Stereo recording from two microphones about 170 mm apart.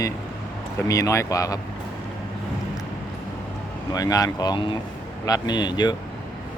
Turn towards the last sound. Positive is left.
turn(degrees=25)  # may be behind; listen again after turning